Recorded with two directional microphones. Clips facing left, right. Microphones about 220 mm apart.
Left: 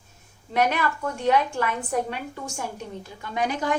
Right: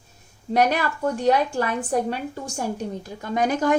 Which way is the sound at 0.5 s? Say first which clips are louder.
Right 3 dB; 40° right (ahead or behind).